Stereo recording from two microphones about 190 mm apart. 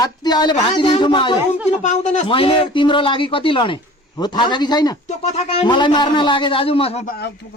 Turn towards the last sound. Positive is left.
turn(degrees=55)  # may be behind; listen again after turning